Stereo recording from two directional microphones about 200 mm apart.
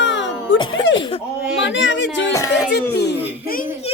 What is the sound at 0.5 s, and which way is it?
Speech, 25° left (ahead or behind).